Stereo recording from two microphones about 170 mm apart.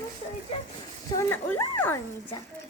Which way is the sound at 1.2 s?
15° left (ahead or behind).